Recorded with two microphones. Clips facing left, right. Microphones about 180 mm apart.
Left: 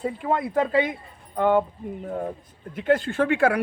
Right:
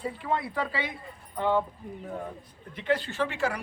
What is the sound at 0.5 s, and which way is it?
Speech, 45° left (ahead or behind).